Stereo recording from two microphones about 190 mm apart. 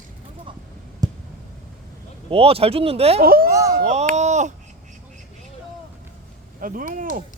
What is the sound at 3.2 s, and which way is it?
Speech, 50° right (ahead or behind).